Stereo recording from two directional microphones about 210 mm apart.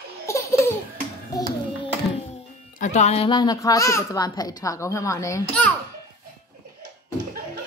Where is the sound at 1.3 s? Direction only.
15° left (ahead or behind).